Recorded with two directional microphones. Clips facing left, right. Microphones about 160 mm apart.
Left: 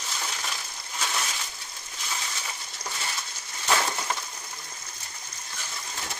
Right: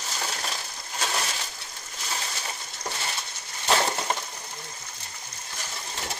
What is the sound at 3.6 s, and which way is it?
Crushing, 30° right (ahead or behind).